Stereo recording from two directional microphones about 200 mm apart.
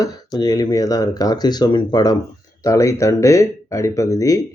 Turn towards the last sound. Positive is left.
turn(degrees=15)  # may be behind; listen again after turning